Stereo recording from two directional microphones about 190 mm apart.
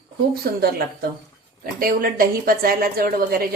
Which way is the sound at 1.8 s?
50° right (ahead or behind).